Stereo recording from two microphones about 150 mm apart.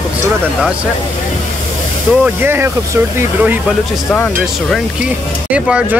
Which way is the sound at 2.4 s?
15° right (ahead or behind).